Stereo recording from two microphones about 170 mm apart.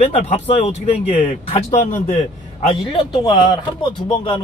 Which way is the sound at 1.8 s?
45° left (ahead or behind).